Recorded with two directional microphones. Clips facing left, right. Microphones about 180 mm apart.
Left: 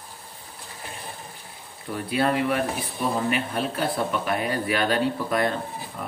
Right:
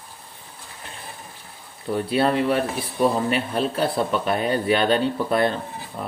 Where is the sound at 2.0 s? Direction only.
30° right (ahead or behind).